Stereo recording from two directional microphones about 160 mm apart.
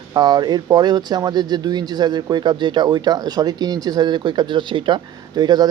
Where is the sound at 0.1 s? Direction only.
25° right (ahead or behind).